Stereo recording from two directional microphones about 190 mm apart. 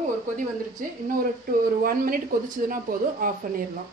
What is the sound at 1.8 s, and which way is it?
Speech, 50° right (ahead or behind).